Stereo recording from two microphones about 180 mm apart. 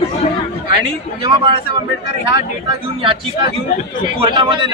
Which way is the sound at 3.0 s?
25° right (ahead or behind).